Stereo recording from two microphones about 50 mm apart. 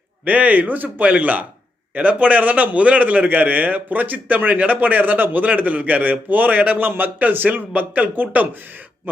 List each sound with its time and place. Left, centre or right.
0.3 s a man's voice: right